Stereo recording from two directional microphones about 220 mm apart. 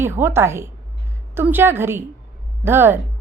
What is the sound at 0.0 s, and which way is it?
A woman's voice, 10° right (ahead or behind).